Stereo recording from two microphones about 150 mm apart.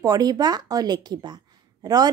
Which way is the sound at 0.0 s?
25° right (ahead or behind).